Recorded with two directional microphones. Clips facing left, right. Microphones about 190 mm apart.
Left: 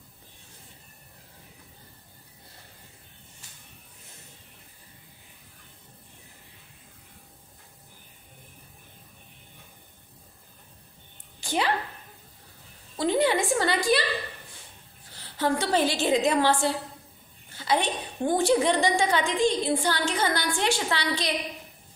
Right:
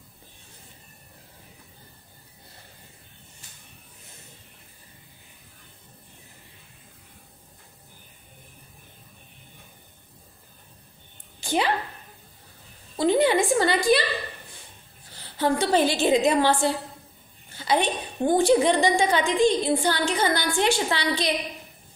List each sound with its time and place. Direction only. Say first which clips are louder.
11.4 s speech: right 3 dB; 20° right (ahead or behind)
12.9 s a woman's voice: right 3 dB; 20° right (ahead or behind)
15.3 s a woman's voice: right 3 dB; 20° right (ahead or behind)
18.2 s a woman's voice: right 3 dB; 20° right (ahead or behind)